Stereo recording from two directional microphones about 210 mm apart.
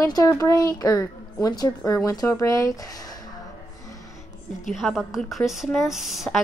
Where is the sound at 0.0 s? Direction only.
15° left (ahead or behind).